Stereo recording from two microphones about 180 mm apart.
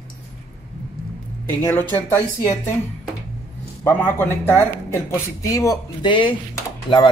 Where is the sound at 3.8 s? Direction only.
10° left (ahead or behind).